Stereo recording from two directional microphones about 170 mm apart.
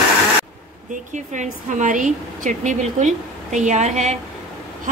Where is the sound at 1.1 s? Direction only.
45° right (ahead or behind).